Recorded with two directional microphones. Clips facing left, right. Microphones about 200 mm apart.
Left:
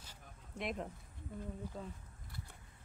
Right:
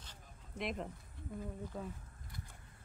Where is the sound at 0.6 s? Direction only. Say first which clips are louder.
Even; centre (ahead or behind).